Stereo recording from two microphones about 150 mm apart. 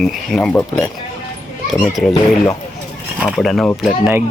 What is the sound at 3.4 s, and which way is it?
Speech, centre (ahead or behind).